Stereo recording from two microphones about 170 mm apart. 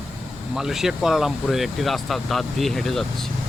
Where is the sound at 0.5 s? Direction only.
Centre (ahead or behind).